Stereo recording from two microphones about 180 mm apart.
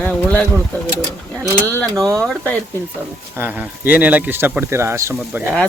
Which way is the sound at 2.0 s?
15° right (ahead or behind).